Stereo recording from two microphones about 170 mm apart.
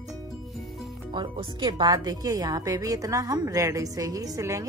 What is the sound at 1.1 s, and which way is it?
A woman's voice, 30° right (ahead or behind).